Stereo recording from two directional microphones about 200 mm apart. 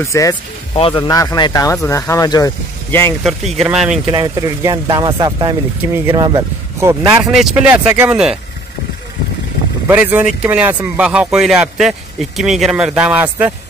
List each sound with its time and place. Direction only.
0.0 s speech: 15° left (ahead or behind)
0.7 s speech: 25° left (ahead or behind)
3.3 s speech: centre (ahead or behind)
4.0 s speech: 20° right (ahead or behind)
7.2 s speech: 5° right (ahead or behind)
9.8 s speech: 10° right (ahead or behind)